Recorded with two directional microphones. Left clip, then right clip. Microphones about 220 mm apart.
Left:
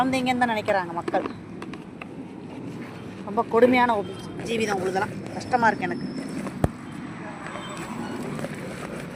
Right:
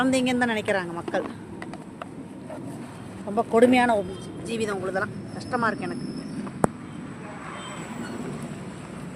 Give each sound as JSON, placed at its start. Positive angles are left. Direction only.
{"t": 0.0, "sound": "a woman's voice", "side_deg": -30}
{"t": 3.3, "sound": "speech", "side_deg": -30}
{"t": 4.4, "sound": "speech", "side_deg": -10}